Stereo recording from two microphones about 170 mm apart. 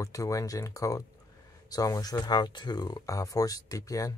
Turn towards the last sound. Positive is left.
turn(degrees=20)  # may be behind; listen again after turning